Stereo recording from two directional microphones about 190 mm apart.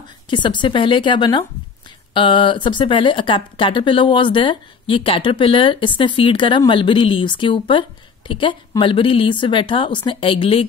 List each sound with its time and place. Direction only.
0.3 s speech: 25° left (ahead or behind)